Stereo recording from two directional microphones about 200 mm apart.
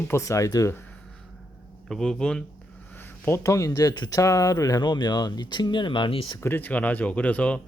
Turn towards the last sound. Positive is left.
turn(degrees=5)  # may be behind; listen again after turning